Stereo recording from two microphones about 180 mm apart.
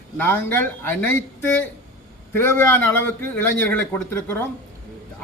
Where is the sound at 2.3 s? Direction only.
10° left (ahead or behind).